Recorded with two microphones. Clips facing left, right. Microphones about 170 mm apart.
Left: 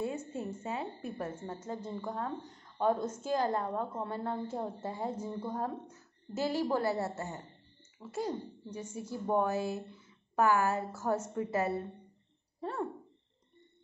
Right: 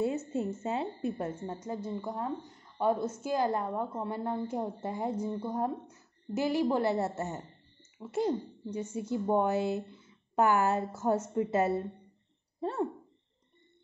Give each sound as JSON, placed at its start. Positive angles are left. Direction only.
{"t": 0.0, "sound": "a sound", "side_deg": -25}
{"t": 0.6, "sound": "a woman's voice", "side_deg": -25}
{"t": 12.5, "sound": "owl", "side_deg": -25}